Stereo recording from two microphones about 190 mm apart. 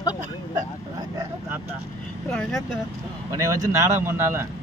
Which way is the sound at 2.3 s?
Centre (ahead or behind).